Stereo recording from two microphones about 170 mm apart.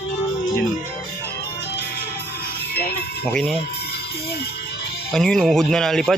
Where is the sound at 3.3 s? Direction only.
5° left (ahead or behind).